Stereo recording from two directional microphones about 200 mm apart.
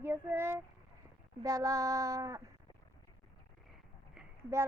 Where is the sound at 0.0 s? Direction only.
10° right (ahead or behind).